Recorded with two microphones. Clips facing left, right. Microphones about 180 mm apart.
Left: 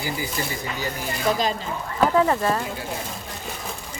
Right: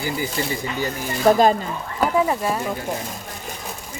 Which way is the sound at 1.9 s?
10° right (ahead or behind).